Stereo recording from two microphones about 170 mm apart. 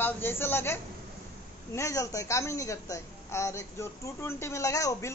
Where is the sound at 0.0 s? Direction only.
15° left (ahead or behind).